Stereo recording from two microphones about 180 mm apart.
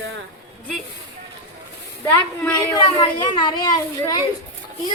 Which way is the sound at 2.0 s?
15° left (ahead or behind).